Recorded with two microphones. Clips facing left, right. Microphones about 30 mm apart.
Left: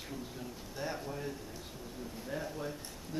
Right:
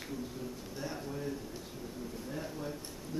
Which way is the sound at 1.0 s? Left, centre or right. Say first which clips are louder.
Right 1 dB; centre.